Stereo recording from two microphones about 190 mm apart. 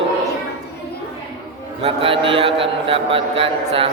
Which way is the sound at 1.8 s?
30° right (ahead or behind).